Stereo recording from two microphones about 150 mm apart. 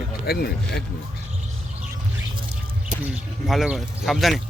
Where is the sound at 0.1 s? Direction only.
90° left.